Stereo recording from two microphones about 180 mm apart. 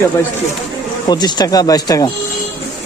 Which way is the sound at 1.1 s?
20° left (ahead or behind).